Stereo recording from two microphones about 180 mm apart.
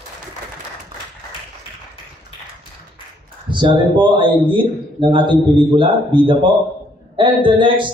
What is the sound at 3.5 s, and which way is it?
A man's voice, 25° right (ahead or behind).